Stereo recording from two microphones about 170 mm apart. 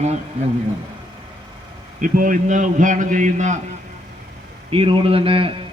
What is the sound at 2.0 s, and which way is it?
A man's voice, 50° right (ahead or behind).